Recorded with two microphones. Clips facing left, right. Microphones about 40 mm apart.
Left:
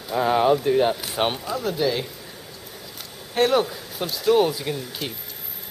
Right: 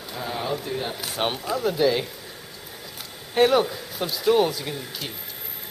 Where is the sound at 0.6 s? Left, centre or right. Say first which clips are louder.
Left 10 dB; left.